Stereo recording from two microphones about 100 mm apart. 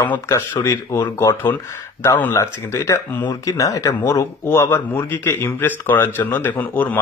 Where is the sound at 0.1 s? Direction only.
30° left (ahead or behind).